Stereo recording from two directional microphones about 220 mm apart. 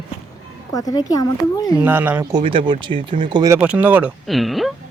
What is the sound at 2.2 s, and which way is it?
Speech, 20° right (ahead or behind).